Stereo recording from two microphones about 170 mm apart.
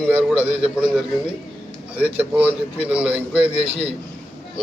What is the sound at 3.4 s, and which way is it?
Speech, 35° right (ahead or behind).